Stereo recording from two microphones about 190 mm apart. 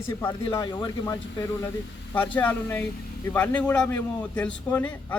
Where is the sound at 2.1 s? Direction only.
10° left (ahead or behind).